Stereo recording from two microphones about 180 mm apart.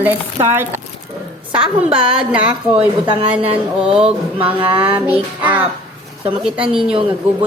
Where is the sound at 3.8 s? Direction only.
5° right (ahead or behind).